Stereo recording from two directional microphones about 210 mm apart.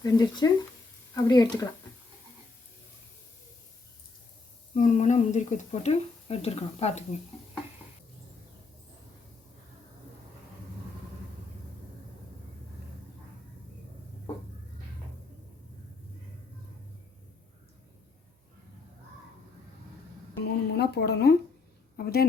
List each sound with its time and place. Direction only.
0.0 s speech: 20° left (ahead or behind)
4.7 s speech: 40° left (ahead or behind)
20.4 s a sound: 50° left (ahead or behind)